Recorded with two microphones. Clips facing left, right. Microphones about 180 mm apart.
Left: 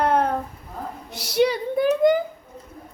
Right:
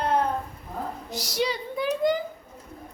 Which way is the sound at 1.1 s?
60° left (ahead or behind).